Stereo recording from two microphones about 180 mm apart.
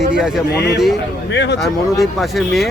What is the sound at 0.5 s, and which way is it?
A man's voice, 65° left (ahead or behind).